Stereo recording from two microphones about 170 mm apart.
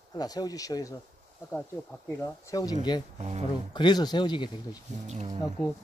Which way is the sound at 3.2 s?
40° right (ahead or behind).